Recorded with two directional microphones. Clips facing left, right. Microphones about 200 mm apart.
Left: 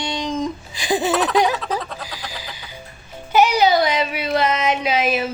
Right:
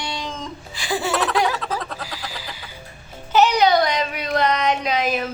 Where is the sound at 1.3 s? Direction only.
20° left (ahead or behind).